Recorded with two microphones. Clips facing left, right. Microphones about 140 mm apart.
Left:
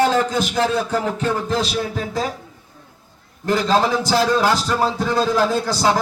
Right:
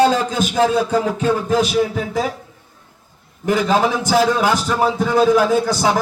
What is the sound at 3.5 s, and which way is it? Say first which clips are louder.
A man's voice: right 1 dB; 15° right (ahead or behind).